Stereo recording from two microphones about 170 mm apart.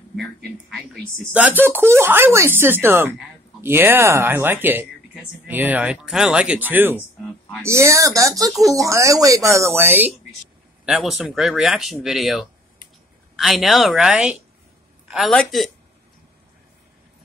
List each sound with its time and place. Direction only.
0.1 s speech: centre (ahead or behind)
1.6 s speech: 15° right (ahead or behind)
10.9 s speech: centre (ahead or behind)